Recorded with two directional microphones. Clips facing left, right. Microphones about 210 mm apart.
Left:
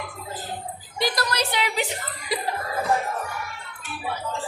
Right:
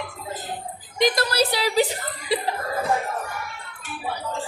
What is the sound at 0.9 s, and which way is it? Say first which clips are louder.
Speech: right 5 dB; 20° right (ahead or behind).